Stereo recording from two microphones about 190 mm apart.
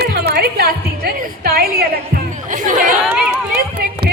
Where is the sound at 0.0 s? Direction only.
55° right (ahead or behind).